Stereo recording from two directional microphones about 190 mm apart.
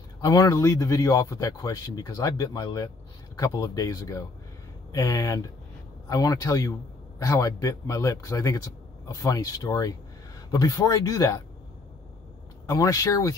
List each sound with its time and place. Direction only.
0.2 s a man's voice: 20° left (ahead or behind)
12.6 s a man's voice: 15° left (ahead or behind)